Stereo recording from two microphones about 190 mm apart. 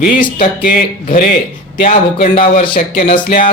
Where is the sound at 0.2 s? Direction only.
45° left (ahead or behind).